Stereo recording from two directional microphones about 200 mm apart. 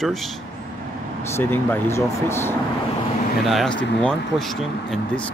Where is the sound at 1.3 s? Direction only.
10° left (ahead or behind).